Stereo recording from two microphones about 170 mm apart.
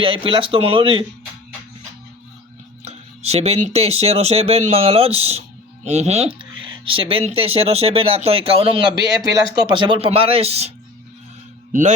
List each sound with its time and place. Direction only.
0.0 s speech: 30° right (ahead or behind)
2.8 s speech: 40° right (ahead or behind)
11.7 s a man's voice: 45° right (ahead or behind)